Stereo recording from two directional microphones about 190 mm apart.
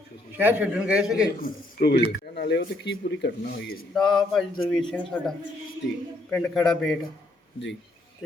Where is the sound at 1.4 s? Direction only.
50° left (ahead or behind).